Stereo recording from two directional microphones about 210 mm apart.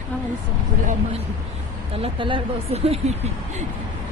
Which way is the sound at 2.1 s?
25° right (ahead or behind).